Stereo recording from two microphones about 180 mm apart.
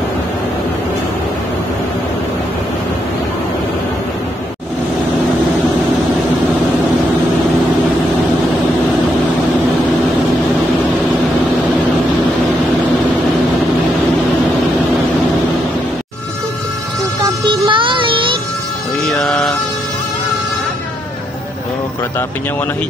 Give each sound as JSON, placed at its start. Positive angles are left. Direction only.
{"t": 17.6, "sound": "child singing", "side_deg": -30}
{"t": 19.2, "sound": "vehicle", "side_deg": 5}